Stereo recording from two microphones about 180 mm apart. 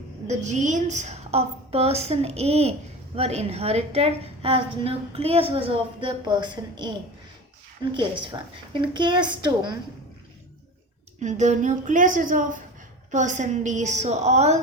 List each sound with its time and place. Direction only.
0.3 s a woman's voice: 40° right (ahead or behind); by 6.9 s 25° right (ahead or behind)
7.9 s a woman's voice: 25° right (ahead or behind)
11.2 s a woman's voice: 40° right (ahead or behind)